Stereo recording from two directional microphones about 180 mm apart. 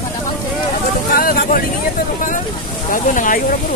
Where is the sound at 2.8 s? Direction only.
45° left (ahead or behind).